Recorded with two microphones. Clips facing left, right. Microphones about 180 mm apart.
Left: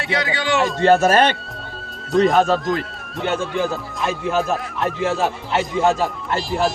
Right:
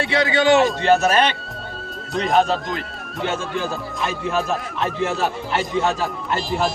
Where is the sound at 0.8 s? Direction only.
45° left (ahead or behind).